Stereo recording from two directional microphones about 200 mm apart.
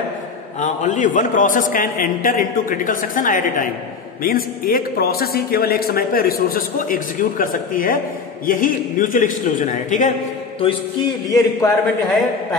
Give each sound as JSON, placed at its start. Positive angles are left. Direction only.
{"t": 0.6, "sound": "a man's voice", "side_deg": 40}
{"t": 11.2, "sound": "a man's voice", "side_deg": 20}